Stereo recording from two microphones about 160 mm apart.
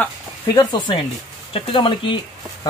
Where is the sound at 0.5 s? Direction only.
25° left (ahead or behind).